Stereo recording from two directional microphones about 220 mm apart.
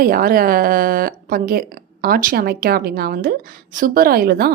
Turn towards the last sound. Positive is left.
turn(degrees=-45)  # may be behind; listen again after turning